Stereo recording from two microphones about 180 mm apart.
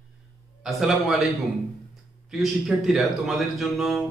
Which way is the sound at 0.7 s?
Centre (ahead or behind).